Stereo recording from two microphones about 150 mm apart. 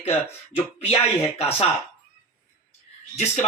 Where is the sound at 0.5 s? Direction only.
45° left (ahead or behind).